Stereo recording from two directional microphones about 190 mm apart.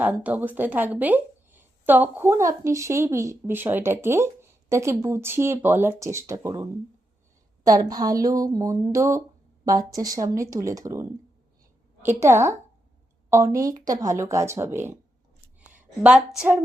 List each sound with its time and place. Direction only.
0.0 s speech: 10° right (ahead or behind)
12.0 s speech: 15° right (ahead or behind)
15.7 s a sound: 5° right (ahead or behind)